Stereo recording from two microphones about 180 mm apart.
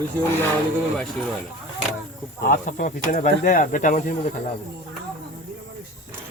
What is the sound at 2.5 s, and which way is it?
A man's voice, 45° left (ahead or behind).